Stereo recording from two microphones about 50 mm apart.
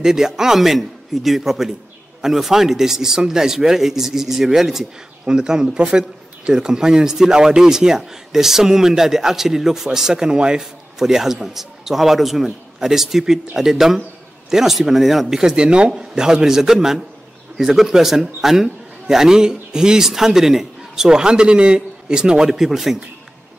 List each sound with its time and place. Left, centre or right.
0.0 s a man's voice: centre